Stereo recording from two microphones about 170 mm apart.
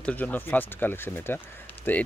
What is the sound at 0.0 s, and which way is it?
Speech, 10° left (ahead or behind).